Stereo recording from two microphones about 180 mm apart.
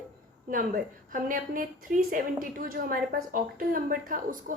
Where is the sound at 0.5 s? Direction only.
50° right (ahead or behind).